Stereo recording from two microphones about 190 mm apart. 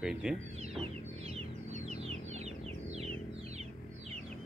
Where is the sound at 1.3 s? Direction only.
35° right (ahead or behind).